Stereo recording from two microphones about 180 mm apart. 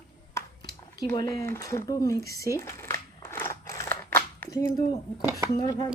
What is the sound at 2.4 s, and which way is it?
Crumpling, 15° left (ahead or behind).